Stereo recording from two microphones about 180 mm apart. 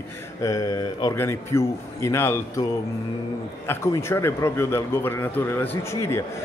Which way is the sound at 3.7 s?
15° left (ahead or behind).